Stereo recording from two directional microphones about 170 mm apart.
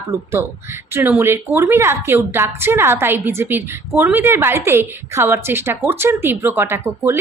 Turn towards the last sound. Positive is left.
turn(degrees=-15)  # may be behind; listen again after turning